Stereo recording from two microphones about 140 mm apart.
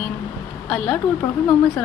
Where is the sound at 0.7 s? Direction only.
5° left (ahead or behind).